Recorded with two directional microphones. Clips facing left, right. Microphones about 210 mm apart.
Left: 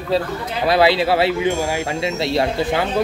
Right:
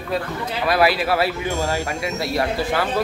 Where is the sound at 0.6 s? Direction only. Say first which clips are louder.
Left 4 dB; 25° left (ahead or behind).